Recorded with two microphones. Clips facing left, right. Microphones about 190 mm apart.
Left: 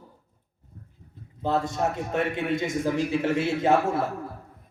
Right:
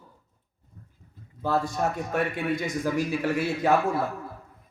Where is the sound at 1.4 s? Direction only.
20° left (ahead or behind).